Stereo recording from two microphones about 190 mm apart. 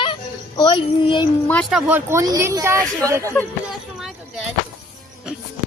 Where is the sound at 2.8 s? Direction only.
5° left (ahead or behind).